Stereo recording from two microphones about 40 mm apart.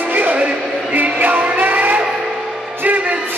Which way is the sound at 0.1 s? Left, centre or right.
Right.